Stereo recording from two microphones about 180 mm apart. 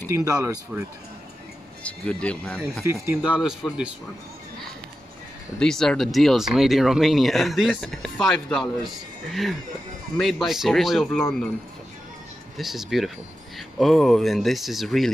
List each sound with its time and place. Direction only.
0.1 s speech: 20° right (ahead or behind)
1.8 s speech: 5° left (ahead or behind)
2.8 s speech: 15° right (ahead or behind)
3.2 s speech: 5° right (ahead or behind)
5.6 s speech: 5° left (ahead or behind)
12.5 s speech: centre (ahead or behind)